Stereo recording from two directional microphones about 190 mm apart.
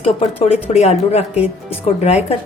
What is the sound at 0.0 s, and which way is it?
A woman's voice, 30° left (ahead or behind).